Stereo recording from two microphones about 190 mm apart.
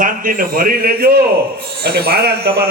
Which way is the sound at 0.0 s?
45° right (ahead or behind).